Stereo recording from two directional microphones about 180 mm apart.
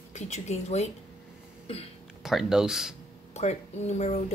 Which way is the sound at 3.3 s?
40° left (ahead or behind).